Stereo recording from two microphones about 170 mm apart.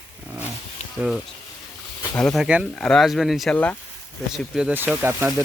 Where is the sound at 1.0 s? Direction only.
5° right (ahead or behind).